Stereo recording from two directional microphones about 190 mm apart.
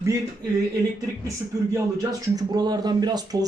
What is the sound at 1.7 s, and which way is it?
Speech, 20° right (ahead or behind).